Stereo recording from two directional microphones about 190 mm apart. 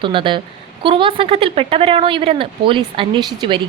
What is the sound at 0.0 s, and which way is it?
Speech, 25° right (ahead or behind).